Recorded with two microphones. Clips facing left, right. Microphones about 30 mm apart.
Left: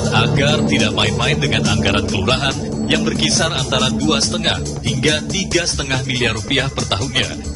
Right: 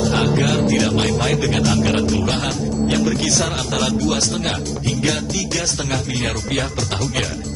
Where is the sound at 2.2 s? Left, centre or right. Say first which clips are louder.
Left 3 dB; left.